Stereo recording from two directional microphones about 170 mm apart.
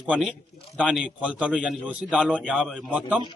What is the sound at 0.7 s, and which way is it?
A man's voice, 5° right (ahead or behind).